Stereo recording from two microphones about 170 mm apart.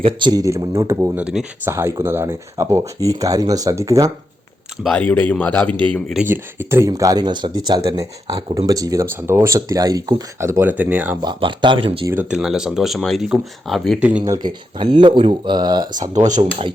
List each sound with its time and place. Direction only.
0.0 s speech: 25° right (ahead or behind)
4.8 s speech: 5° left (ahead or behind)
6.2 s speech: 10° right (ahead or behind)
11.2 s speech: 25° right (ahead or behind)
12.3 s speech: 5° right (ahead or behind)
14.3 s speech: 25° right (ahead or behind)
16.1 s speech: 45° right (ahead or behind)